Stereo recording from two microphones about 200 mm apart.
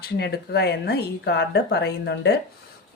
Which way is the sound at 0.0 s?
55° left (ahead or behind).